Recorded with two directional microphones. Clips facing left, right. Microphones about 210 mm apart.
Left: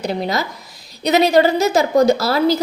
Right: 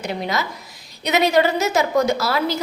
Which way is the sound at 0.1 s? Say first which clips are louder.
Left 3 dB; 35° left (ahead or behind).